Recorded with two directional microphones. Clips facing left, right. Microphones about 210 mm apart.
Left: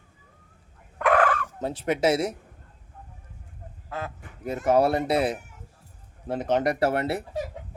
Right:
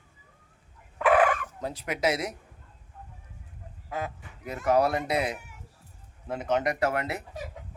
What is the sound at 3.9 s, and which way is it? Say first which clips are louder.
Speech: right 1 dB; 15° right (ahead or behind).